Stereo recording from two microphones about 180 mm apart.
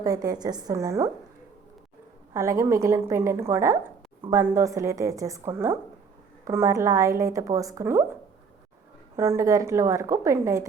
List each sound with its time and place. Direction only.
0.0 s a woman's voice: 20° right (ahead or behind)
2.3 s a woman's voice: 15° right (ahead or behind)
9.1 s a woman's voice: 15° right (ahead or behind)